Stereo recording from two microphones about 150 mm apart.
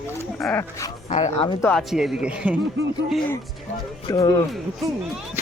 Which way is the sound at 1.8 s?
Centre (ahead or behind).